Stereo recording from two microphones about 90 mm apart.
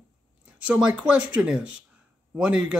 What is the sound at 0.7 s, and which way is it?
Speech, 10° right (ahead or behind).